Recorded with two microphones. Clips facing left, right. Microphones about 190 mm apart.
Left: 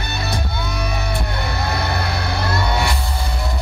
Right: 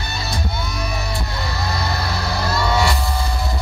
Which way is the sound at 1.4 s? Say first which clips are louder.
Left 2 dB; 60° left (ahead or behind).